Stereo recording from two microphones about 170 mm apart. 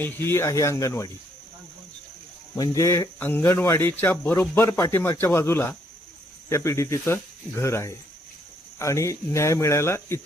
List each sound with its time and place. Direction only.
0.0 s speech: 15° left (ahead or behind)
2.6 s speech: 20° left (ahead or behind)